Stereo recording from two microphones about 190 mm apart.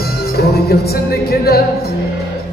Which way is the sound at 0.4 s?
55° left (ahead or behind).